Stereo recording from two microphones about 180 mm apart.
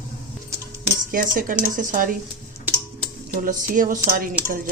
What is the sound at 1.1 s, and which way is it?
Speech, 50° right (ahead or behind).